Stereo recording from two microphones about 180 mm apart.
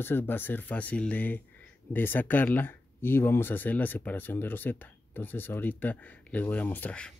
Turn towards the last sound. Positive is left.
turn(degrees=5)  # may be behind; listen again after turning